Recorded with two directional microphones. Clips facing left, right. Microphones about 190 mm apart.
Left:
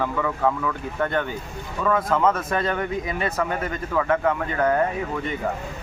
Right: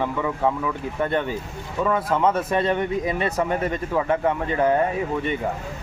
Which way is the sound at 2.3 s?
30° right (ahead or behind).